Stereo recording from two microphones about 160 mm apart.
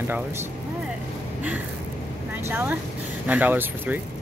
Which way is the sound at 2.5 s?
15° right (ahead or behind).